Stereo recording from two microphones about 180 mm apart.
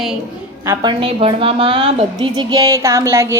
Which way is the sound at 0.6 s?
15° right (ahead or behind).